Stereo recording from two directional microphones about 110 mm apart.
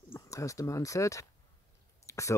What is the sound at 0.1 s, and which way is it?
Speech, 30° left (ahead or behind).